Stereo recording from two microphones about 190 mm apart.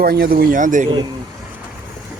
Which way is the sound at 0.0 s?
50° right (ahead or behind).